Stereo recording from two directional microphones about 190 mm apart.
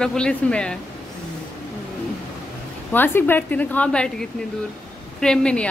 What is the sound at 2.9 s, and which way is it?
A woman's voice, 10° left (ahead or behind).